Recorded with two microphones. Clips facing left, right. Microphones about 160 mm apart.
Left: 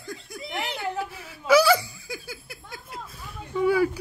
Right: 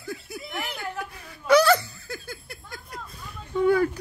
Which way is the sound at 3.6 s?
5° left (ahead or behind).